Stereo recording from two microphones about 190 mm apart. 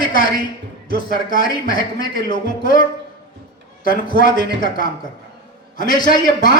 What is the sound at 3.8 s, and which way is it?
Speech, 45° left (ahead or behind).